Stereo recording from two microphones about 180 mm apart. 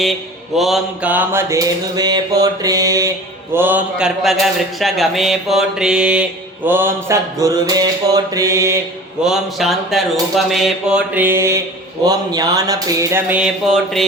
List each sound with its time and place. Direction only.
0.5 s mantra: centre (ahead or behind); by 8.8 s 15° right (ahead or behind)
9.2 s speech: centre (ahead or behind)
12.0 s mantra: 20° right (ahead or behind); by 14.0 s centre (ahead or behind)